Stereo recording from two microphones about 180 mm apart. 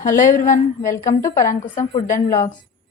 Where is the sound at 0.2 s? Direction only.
45° left (ahead or behind).